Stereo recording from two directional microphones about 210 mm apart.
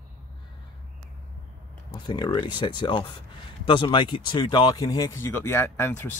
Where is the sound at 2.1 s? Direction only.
20° left (ahead or behind).